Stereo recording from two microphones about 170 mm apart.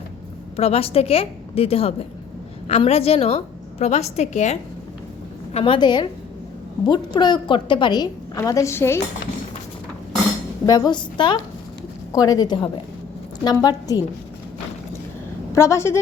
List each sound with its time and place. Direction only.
0.5 s a woman's voice: 35° left (ahead or behind)
5.5 s a woman's voice: 30° left (ahead or behind); by 9.0 s 15° left (ahead or behind)
10.7 s a woman's voice: 25° left (ahead or behind)
15.5 s a woman's voice: 15° left (ahead or behind)